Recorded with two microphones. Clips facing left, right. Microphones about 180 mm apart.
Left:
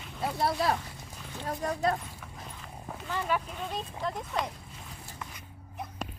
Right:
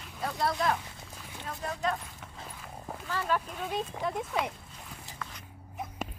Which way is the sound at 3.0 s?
15° left (ahead or behind).